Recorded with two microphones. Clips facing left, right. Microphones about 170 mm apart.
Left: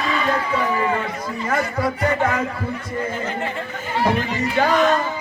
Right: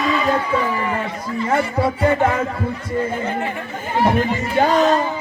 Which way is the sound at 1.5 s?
25° right (ahead or behind).